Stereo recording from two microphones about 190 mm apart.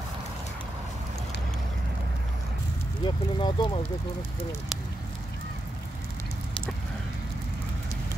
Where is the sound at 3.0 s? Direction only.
25° left (ahead or behind).